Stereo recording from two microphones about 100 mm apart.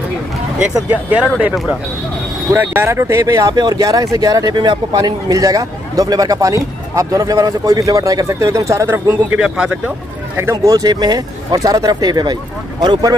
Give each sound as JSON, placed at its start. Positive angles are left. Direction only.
{"t": 0.8, "sound": "speech", "side_deg": -15}
{"t": 2.5, "sound": "speech", "side_deg": -25}
{"t": 9.4, "sound": "speech", "side_deg": -5}
{"t": 10.3, "sound": "speech", "side_deg": -30}